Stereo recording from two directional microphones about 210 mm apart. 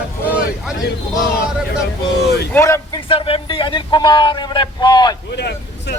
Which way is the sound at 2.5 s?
15° left (ahead or behind).